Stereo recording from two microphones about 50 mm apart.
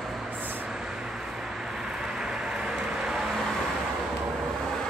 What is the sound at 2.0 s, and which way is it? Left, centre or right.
Vehicle, centre.